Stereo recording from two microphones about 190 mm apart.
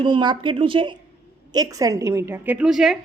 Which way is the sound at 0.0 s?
25° right (ahead or behind).